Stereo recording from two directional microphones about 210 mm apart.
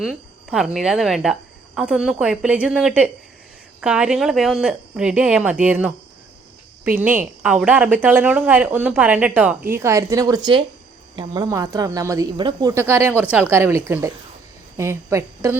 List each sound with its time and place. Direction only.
0.0 s a woman's voice: centre (ahead or behind)